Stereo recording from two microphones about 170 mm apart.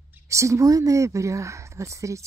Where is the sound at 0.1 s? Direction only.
20° right (ahead or behind).